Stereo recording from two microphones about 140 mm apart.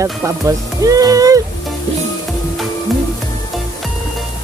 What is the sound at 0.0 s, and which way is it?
Speech, 25° right (ahead or behind).